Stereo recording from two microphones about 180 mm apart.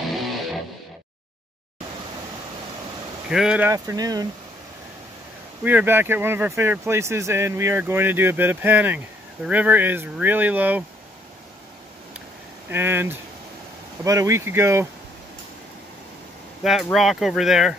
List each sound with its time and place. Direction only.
3.3 s speech: 5° right (ahead or behind); by 4.3 s 20° right (ahead or behind)
5.6 s speech: 10° right (ahead or behind)
12.6 s speech: 10° right (ahead or behind)
16.6 s speech: centre (ahead or behind)